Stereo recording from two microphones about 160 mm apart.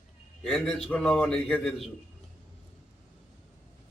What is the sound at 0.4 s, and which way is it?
A man's voice, 5° left (ahead or behind).